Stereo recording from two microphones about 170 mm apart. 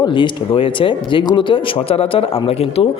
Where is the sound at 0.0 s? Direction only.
30° left (ahead or behind).